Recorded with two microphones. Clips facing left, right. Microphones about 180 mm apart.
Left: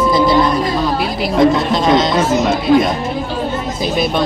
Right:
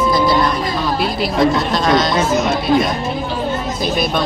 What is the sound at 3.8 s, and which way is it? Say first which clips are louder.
Speech: left 3 dB; 20° left (ahead or behind).